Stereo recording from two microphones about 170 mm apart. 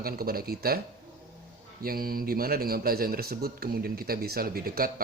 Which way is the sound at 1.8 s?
60° right (ahead or behind).